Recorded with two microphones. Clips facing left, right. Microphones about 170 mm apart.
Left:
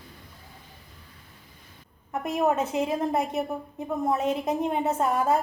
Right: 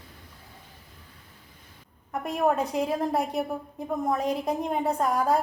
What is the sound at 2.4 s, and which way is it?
A woman's voice, 5° left (ahead or behind).